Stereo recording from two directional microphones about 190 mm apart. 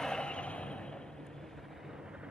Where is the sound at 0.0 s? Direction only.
5° left (ahead or behind).